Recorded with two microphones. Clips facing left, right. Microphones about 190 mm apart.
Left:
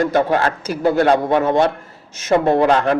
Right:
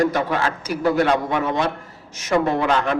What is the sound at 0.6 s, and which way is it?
A man's voice, 25° left (ahead or behind).